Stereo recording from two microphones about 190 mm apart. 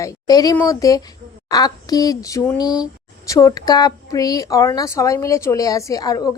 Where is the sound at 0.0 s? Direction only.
20° left (ahead or behind).